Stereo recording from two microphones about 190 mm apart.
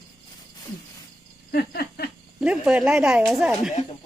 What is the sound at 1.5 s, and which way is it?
Insect, 55° left (ahead or behind).